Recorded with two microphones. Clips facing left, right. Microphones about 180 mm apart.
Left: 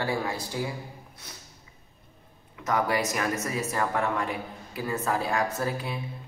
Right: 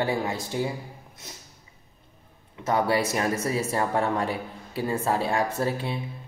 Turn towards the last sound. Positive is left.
turn(degrees=-30)  # may be behind; listen again after turning